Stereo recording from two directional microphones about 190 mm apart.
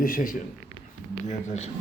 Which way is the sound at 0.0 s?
45° left (ahead or behind).